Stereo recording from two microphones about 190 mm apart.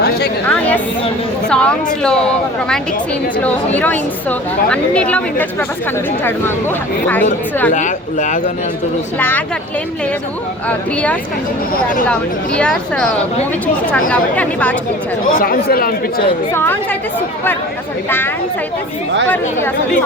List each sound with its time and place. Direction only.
0.4 s a woman's voice: 10° left (ahead or behind)
7.7 s speech: 40° left (ahead or behind)
9.1 s a woman's voice: 10° left (ahead or behind)
10.7 s a woman's voice: 5° left (ahead or behind)
12.5 s a woman's voice: 5° left (ahead or behind)
14.1 s a woman's voice: 5° left (ahead or behind)
15.2 s speech: 50° left (ahead or behind)
16.5 s a woman's voice: 10° left (ahead or behind)